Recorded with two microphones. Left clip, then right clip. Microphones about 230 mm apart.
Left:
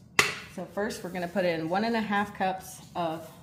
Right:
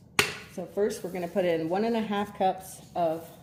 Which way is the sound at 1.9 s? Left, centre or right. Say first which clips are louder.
Left 2 dB; left.